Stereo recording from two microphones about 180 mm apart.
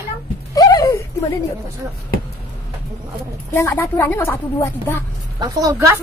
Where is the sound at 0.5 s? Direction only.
20° left (ahead or behind).